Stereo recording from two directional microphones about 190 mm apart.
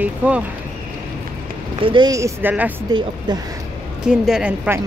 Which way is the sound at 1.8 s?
20° right (ahead or behind).